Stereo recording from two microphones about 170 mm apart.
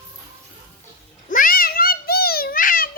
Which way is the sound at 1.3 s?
55° left (ahead or behind).